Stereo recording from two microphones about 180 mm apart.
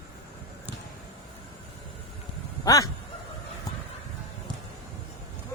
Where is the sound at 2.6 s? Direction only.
20° left (ahead or behind).